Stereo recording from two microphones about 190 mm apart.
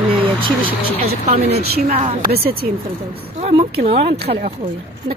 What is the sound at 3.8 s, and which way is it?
Speech, 35° right (ahead or behind).